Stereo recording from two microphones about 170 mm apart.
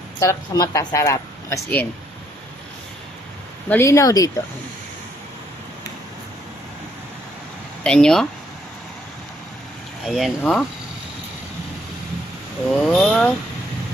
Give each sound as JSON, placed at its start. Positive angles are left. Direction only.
{"t": 0.2, "sound": "speech", "side_deg": 20}
{"t": 3.7, "sound": "speech", "side_deg": 15}
{"t": 7.9, "sound": "speech", "side_deg": 5}
{"t": 10.1, "sound": "speech", "side_deg": 0}
{"t": 12.7, "sound": "speech", "side_deg": 5}